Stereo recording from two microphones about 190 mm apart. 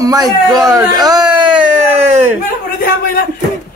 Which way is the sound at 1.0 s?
20° right (ahead or behind).